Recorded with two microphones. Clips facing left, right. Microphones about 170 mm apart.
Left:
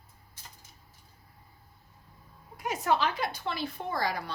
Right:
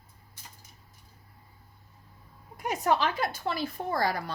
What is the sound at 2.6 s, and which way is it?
A woman's voice, 45° right (ahead or behind).